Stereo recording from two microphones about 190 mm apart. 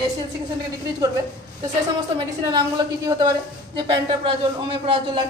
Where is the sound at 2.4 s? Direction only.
20° right (ahead or behind).